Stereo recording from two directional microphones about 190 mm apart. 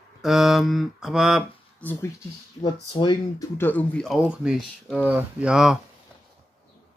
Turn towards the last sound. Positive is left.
turn(degrees=-5)  # may be behind; listen again after turning